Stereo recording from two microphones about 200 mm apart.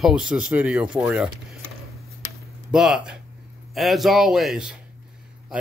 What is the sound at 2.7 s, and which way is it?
Speech, 5° right (ahead or behind).